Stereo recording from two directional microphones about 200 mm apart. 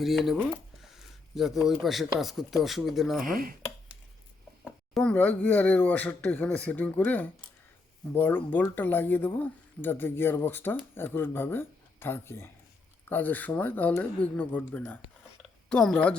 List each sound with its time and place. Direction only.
0.0 s speech: centre (ahead or behind)
3.2 s speech: 45° right (ahead or behind)
4.6 s speech: 5° left (ahead or behind)